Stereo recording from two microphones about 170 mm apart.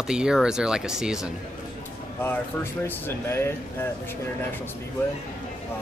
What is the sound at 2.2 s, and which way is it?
Speech, 15° left (ahead or behind).